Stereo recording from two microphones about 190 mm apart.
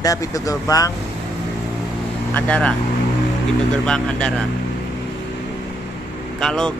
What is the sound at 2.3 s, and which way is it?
Speech, 5° left (ahead or behind).